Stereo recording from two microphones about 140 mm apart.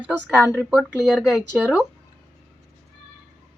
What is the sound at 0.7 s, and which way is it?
Speech, 5° right (ahead or behind).